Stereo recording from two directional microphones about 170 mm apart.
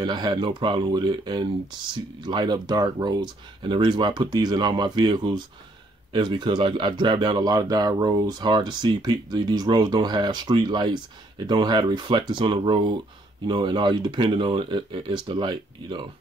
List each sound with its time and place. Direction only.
0.0 s speech: 25° right (ahead or behind)